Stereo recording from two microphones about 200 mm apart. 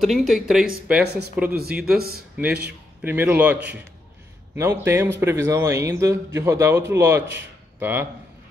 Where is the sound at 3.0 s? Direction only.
10° right (ahead or behind).